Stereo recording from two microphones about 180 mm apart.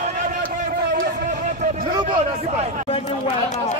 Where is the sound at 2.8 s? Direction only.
30° left (ahead or behind).